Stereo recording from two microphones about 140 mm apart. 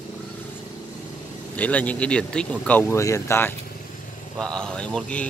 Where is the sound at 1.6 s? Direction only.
10° left (ahead or behind).